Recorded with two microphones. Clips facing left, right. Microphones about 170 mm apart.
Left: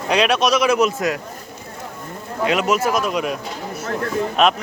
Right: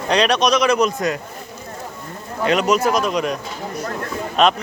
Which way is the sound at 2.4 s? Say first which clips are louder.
Right 2 dB; 5° left (ahead or behind).